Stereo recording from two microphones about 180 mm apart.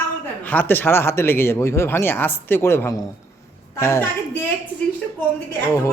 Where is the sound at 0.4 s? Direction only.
10° left (ahead or behind).